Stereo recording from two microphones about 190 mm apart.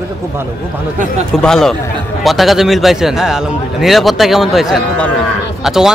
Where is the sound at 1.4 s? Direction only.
Centre (ahead or behind).